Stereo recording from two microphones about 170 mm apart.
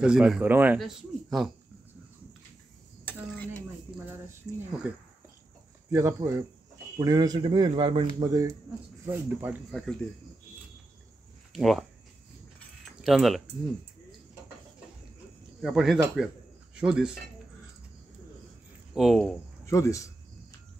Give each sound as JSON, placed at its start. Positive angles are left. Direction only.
{"t": 0.0, "sound": "speech", "side_deg": -5}
{"t": 0.7, "sound": "speech", "side_deg": 0}
{"t": 3.1, "sound": "cutlery", "side_deg": 10}
{"t": 5.9, "sound": "speech", "side_deg": -15}
{"t": 9.7, "sound": "speech", "side_deg": 0}
{"t": 11.5, "sound": "speech", "side_deg": 0}
{"t": 13.0, "sound": "speech", "side_deg": 0}
{"t": 15.6, "sound": "speech", "side_deg": 0}
{"t": 18.9, "sound": "speech", "side_deg": 0}
{"t": 19.6, "sound": "speech", "side_deg": 20}